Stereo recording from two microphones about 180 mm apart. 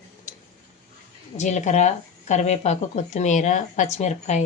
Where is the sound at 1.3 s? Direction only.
40° left (ahead or behind).